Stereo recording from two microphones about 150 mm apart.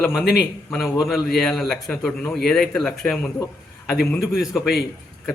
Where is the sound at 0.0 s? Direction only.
Centre (ahead or behind).